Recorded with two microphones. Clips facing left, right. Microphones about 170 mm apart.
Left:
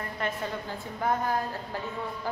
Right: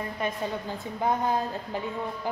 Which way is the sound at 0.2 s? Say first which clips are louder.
Right 1 dB; 15° right (ahead or behind).